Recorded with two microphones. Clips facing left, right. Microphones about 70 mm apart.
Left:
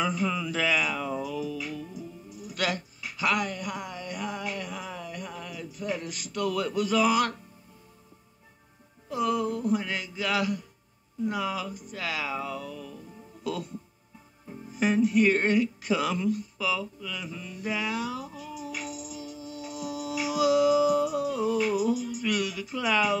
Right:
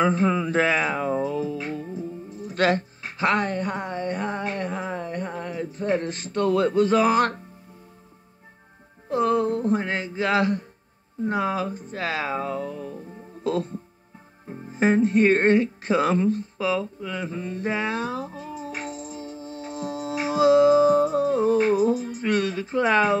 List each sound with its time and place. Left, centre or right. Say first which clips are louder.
0.0 s music: right 7 dB; right
9.1 s speech: right 6 dB; right